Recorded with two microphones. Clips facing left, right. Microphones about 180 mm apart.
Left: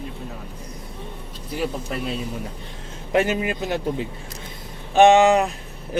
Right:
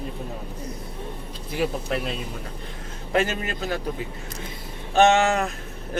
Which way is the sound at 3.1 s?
15° left (ahead or behind).